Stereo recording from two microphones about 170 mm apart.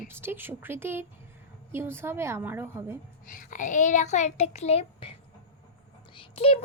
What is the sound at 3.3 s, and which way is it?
A child's voice, 55° left (ahead or behind).